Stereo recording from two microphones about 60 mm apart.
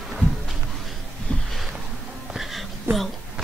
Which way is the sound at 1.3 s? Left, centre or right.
Centre.